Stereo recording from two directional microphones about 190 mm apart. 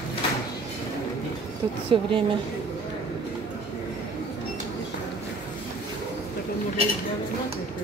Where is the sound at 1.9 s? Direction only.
30° right (ahead or behind).